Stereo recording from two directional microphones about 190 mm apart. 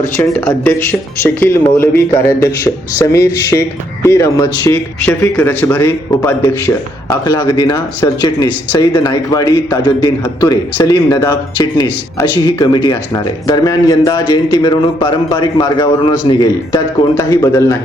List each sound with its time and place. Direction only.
0.0 s speech: 10° left (ahead or behind)